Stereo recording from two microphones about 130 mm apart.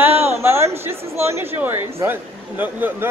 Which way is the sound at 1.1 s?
20° right (ahead or behind).